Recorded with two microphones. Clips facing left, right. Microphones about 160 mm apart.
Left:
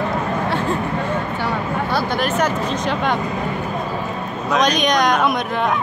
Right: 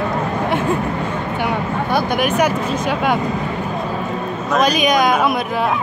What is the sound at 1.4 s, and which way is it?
Speech, 15° right (ahead or behind).